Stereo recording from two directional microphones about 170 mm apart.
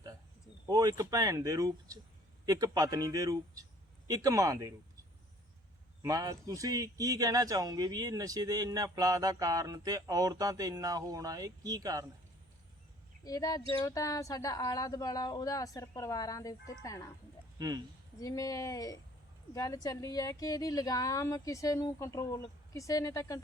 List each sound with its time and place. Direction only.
0.7 s speech: 20° right (ahead or behind)
6.0 s speech: 20° right (ahead or behind)
13.2 s speech: 20° left (ahead or behind)
17.6 s speech: 25° right (ahead or behind)
18.2 s speech: 20° left (ahead or behind)